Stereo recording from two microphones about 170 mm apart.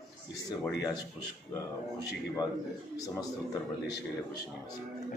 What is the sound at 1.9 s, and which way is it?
Speech, 20° left (ahead or behind).